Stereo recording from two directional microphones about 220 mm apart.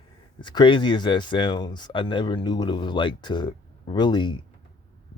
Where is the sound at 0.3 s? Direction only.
20° left (ahead or behind).